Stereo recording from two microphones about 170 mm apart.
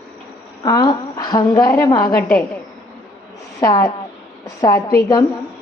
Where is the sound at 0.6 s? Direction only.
25° left (ahead or behind).